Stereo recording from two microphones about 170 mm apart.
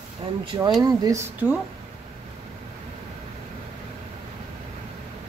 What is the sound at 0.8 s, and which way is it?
Speech, 20° right (ahead or behind).